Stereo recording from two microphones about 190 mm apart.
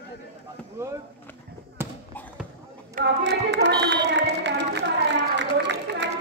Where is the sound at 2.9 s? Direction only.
65° right (ahead or behind).